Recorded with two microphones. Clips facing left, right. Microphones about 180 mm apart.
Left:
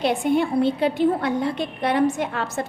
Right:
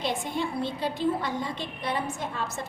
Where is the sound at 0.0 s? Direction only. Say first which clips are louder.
Left 9 dB; 65° left (ahead or behind).